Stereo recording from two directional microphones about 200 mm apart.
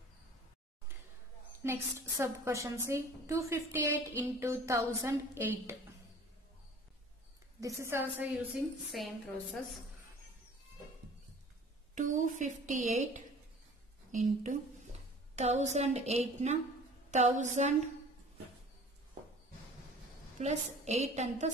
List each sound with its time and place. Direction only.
1.6 s a woman's voice: 10° right (ahead or behind)
7.6 s a woman's voice: 15° right (ahead or behind)
8.9 s a woman's voice: centre (ahead or behind)
11.9 s a woman's voice: 40° right (ahead or behind)
20.3 s a woman's voice: 35° right (ahead or behind)